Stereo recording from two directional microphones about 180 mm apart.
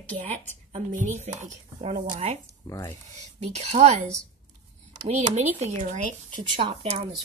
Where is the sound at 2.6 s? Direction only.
15° left (ahead or behind).